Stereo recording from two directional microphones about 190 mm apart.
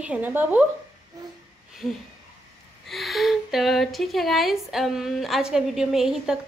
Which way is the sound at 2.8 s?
Centre (ahead or behind).